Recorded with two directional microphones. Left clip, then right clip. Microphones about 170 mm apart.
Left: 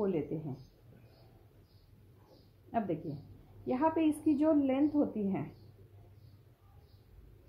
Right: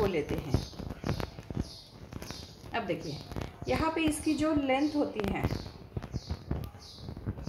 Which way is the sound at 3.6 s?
45° left (ahead or behind).